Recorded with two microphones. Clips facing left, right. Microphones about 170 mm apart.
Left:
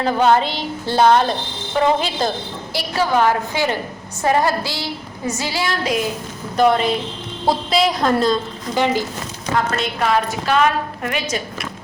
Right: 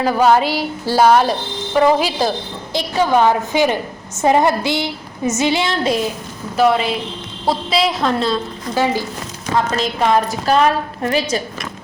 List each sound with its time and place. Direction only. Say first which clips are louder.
0.0 s a woman's voice: right 2 dB; 5° right (ahead or behind)
2.7 s a woman's voice: right 3 dB; 20° right (ahead or behind)
6.6 s a woman's voice: even; 5° right (ahead or behind)
9.8 s a woman's voice: right 3 dB; 35° right (ahead or behind)